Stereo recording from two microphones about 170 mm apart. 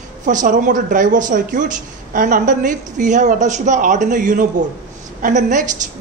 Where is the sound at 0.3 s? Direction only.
50° right (ahead or behind).